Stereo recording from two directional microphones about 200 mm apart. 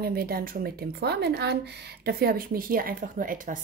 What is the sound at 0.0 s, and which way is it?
Speech, 50° right (ahead or behind).